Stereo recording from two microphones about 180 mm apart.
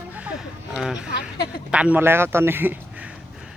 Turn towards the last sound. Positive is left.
turn(degrees=-10)  # may be behind; listen again after turning